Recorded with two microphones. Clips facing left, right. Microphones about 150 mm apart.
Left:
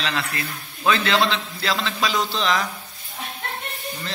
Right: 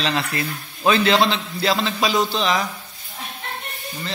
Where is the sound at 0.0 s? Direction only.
30° right (ahead or behind); by 2.6 s 10° right (ahead or behind).